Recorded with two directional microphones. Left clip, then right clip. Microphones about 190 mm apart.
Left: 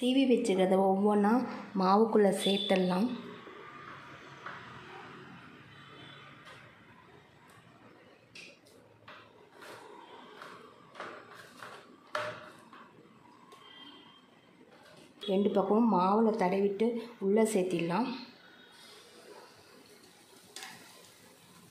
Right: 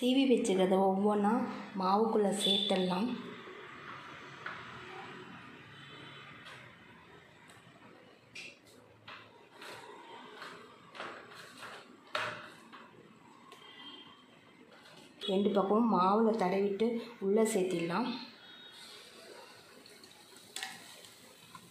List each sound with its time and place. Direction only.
0.0 s a woman's voice: 20° left (ahead or behind); by 3.1 s 35° left (ahead or behind)
15.2 s speech: 25° left (ahead or behind)